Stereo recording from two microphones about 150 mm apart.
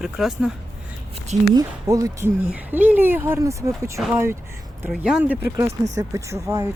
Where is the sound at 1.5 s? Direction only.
25° right (ahead or behind).